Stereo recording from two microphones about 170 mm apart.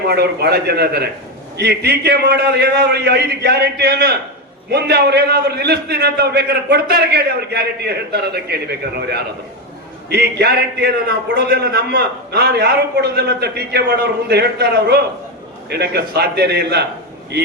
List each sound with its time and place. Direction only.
0.1 s a man's voice: 70° right (ahead or behind)